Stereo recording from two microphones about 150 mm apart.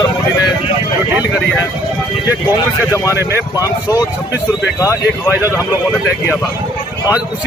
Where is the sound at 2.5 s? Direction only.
20° left (ahead or behind).